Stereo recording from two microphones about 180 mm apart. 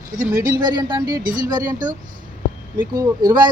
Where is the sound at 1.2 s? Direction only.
50° right (ahead or behind).